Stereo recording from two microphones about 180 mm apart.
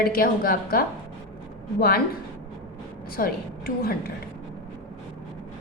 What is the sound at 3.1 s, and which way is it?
Speech, 55° left (ahead or behind).